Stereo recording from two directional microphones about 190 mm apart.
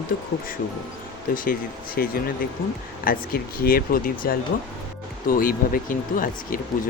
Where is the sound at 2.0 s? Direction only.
50° left (ahead or behind).